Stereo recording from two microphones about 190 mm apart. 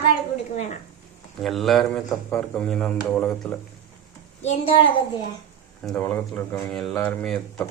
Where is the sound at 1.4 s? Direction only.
Centre (ahead or behind).